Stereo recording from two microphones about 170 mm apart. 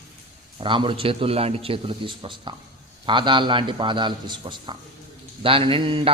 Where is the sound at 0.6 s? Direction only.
30° right (ahead or behind).